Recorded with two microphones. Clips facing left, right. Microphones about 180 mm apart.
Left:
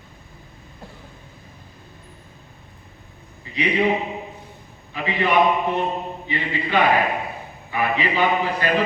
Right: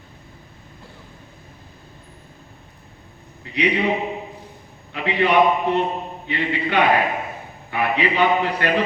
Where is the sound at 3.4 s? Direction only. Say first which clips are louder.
Right 4 dB; 70° right (ahead or behind).